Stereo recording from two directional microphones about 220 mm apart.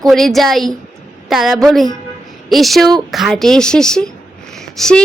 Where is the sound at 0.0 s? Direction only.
Centre (ahead or behind).